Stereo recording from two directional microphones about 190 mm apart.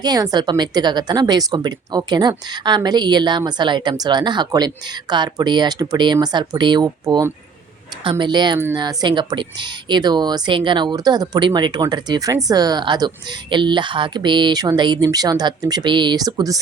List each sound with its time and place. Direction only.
0.0 s a woman's voice: 20° right (ahead or behind)